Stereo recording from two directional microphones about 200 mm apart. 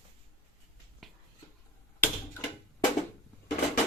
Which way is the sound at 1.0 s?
Centre (ahead or behind).